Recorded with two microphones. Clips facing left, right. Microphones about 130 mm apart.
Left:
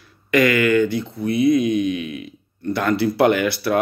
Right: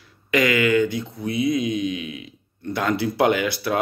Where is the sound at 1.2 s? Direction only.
55° left (ahead or behind).